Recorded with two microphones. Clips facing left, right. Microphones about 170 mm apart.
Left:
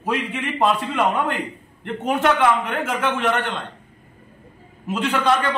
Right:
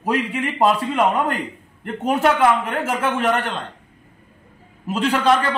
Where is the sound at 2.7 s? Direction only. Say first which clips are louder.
Right 1 dB; 35° right (ahead or behind).